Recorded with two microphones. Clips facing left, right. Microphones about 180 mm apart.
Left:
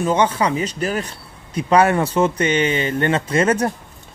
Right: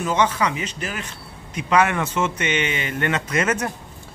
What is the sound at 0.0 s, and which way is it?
Speech, 30° left (ahead or behind).